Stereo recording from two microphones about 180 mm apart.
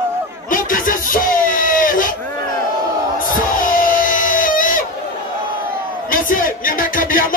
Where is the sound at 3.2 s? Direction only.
50° left (ahead or behind).